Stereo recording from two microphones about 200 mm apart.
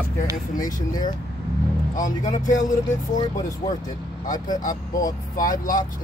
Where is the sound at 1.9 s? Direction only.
40° left (ahead or behind).